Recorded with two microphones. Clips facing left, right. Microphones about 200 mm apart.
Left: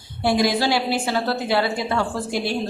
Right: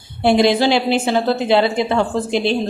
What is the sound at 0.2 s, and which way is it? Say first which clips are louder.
Speech: right 6 dB; 25° right (ahead or behind).